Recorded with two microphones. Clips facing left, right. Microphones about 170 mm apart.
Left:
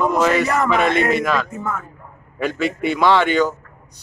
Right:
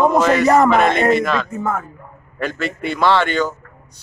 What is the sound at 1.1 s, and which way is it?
Speech, 5° left (ahead or behind).